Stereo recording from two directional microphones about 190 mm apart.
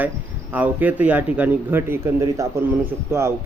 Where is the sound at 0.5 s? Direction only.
10° right (ahead or behind).